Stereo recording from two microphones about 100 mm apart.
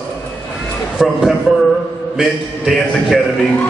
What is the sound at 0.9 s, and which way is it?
A man's voice, 5° right (ahead or behind).